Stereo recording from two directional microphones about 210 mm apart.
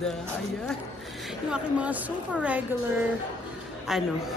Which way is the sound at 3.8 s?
Centre (ahead or behind).